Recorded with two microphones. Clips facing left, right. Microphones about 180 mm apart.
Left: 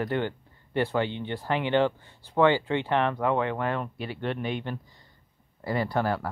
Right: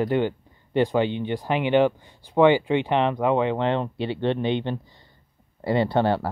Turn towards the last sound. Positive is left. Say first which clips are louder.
# right 6 dB
turn(degrees=-30)  # may be behind; listen again after turning